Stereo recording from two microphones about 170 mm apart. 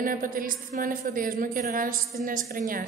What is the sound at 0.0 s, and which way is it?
A woman's voice, 55° right (ahead or behind).